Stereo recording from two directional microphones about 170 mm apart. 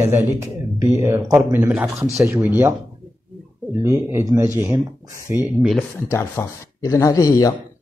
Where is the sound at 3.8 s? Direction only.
15° right (ahead or behind).